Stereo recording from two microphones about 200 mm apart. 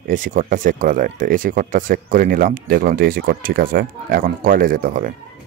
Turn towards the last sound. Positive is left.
turn(degrees=-45)  # may be behind; listen again after turning